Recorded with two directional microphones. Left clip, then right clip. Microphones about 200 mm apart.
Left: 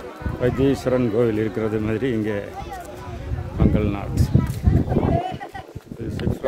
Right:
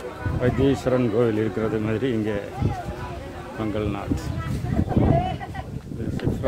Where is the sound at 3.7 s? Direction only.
25° left (ahead or behind).